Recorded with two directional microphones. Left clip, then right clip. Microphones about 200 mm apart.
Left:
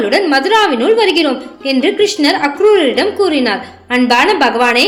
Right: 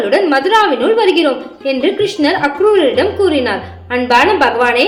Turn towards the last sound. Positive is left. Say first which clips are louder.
# even
turn(degrees=35)  # may be behind; listen again after turning